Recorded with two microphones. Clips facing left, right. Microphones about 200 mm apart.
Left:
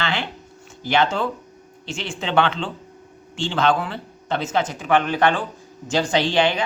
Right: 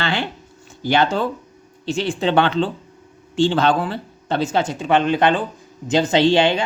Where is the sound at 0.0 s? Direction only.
35° right (ahead or behind).